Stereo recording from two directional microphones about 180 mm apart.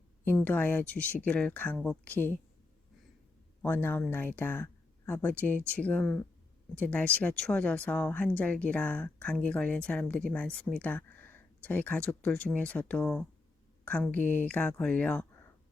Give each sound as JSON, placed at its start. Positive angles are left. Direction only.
{"t": 0.3, "sound": "speech", "side_deg": 10}
{"t": 3.6, "sound": "speech", "side_deg": 10}